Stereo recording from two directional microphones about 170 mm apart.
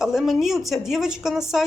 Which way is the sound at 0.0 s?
Centre (ahead or behind).